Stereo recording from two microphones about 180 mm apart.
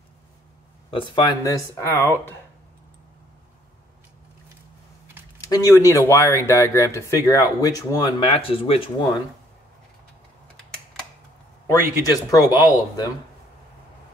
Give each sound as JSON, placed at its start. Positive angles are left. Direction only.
{"t": 0.8, "sound": "speech", "side_deg": 25}
{"t": 5.4, "sound": "speech", "side_deg": 20}
{"t": 11.6, "sound": "speech", "side_deg": 20}